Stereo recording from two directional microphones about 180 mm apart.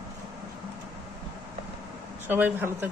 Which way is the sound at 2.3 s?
10° right (ahead or behind).